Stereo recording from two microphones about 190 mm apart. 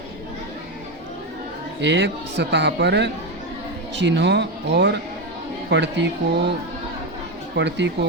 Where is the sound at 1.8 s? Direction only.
65° right (ahead or behind).